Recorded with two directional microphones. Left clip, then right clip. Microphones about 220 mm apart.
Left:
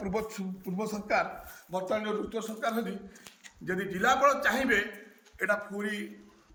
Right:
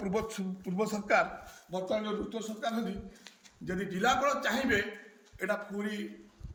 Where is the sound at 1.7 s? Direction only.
10° left (ahead or behind).